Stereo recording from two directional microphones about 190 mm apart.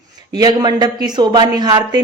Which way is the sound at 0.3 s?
20° right (ahead or behind).